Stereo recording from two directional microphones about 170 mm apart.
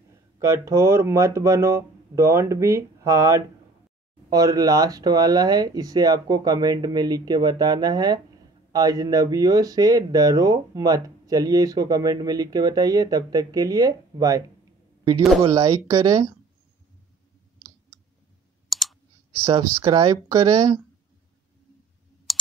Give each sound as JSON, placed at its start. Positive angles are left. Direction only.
{"t": 0.4, "sound": "speech", "side_deg": -15}
{"t": 15.5, "sound": "speech", "side_deg": -20}
{"t": 18.7, "sound": "clicking", "side_deg": 0}
{"t": 19.4, "sound": "speech", "side_deg": -25}
{"t": 22.3, "sound": "clicking", "side_deg": 0}